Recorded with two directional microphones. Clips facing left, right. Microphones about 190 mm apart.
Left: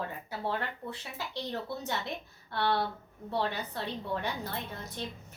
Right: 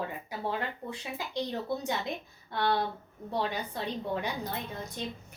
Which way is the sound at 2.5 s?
15° right (ahead or behind).